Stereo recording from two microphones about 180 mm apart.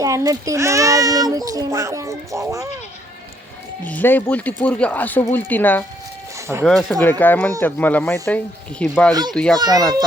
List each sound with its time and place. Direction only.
0.0 s a child's voice: 20° right (ahead or behind)
3.8 s speech: 10° left (ahead or behind)
9.6 s a child's voice: 20° right (ahead or behind)